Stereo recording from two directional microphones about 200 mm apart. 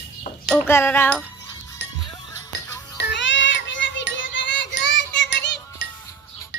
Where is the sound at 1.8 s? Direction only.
60° left (ahead or behind).